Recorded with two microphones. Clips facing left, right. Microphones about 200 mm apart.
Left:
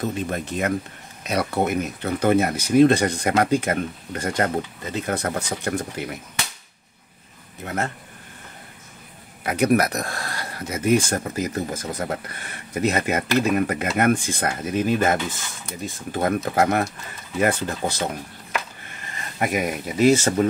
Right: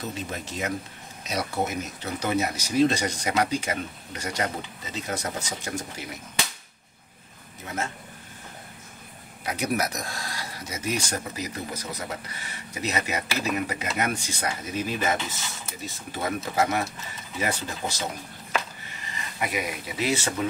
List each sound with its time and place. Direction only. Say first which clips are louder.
0.0 s speech: left 7 dB; 55° left (ahead or behind)
7.6 s speech: left 5 dB; 60° left (ahead or behind)
9.4 s speech: left 8 dB; 60° left (ahead or behind)
19.1 s speech: left 6 dB; 50° left (ahead or behind)